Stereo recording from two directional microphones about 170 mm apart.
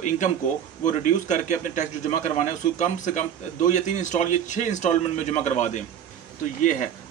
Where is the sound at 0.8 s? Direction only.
50° left (ahead or behind).